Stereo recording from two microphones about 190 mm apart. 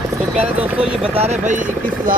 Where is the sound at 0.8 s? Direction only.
30° right (ahead or behind).